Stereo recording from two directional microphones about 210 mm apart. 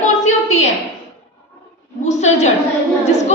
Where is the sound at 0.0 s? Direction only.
35° left (ahead or behind).